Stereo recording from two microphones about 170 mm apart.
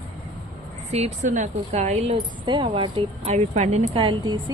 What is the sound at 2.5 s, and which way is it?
Speech, 30° right (ahead or behind).